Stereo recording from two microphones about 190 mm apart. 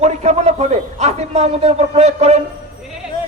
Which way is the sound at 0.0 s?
35° right (ahead or behind).